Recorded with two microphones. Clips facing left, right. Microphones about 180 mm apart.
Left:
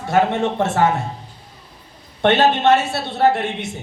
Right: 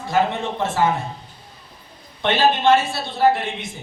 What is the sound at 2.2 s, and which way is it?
A man's voice, 70° left (ahead or behind).